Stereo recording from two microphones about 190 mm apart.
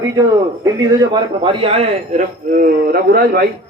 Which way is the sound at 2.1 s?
45° right (ahead or behind).